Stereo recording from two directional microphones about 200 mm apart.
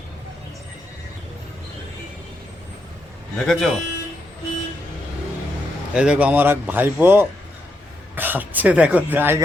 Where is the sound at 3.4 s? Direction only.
Centre (ahead or behind).